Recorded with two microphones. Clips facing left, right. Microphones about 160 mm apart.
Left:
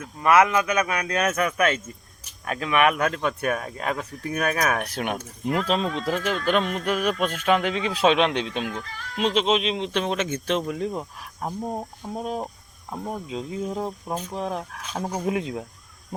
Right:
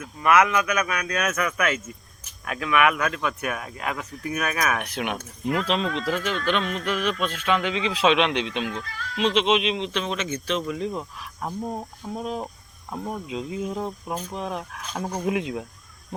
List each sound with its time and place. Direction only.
0.0 s speech: 30° left (ahead or behind)
11.4 s speech: 15° left (ahead or behind)
12.1 s speech: 35° left (ahead or behind)
12.9 s speech: 10° left (ahead or behind)
13.2 s speech: 35° left (ahead or behind)
15.0 s speech: 10° left (ahead or behind)
15.3 s speech: 35° left (ahead or behind)